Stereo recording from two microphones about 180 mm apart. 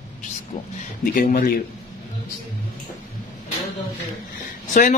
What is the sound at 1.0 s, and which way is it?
Speech, 50° left (ahead or behind).